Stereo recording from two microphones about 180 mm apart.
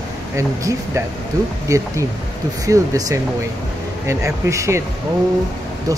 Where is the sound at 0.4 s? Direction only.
15° right (ahead or behind).